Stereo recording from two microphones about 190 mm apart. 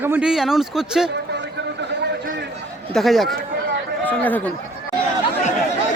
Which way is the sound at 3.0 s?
Centre (ahead or behind).